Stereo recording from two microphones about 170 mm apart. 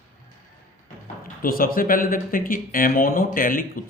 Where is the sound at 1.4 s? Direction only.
60° left (ahead or behind).